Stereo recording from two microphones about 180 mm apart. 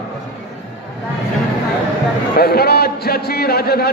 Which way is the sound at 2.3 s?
60° left (ahead or behind).